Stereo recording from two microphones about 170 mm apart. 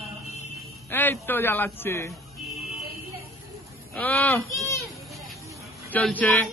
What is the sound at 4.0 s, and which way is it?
Speech, 10° left (ahead or behind).